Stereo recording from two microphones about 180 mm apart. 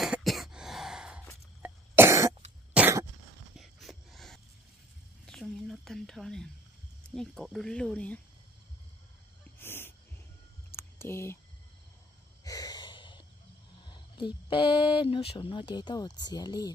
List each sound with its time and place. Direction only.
0.0 s cough: centre (ahead or behind)
3.5 s a sound: centre (ahead or behind)
7.0 s speech: 5° left (ahead or behind)
9.6 s owl: 10° left (ahead or behind)
10.8 s a sound: 15° left (ahead or behind)
12.4 s snort: 20° left (ahead or behind)
13.8 s speech: 25° left (ahead or behind)